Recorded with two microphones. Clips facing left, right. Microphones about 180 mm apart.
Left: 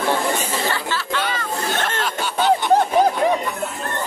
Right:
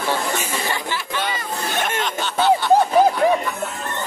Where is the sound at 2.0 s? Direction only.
15° left (ahead or behind).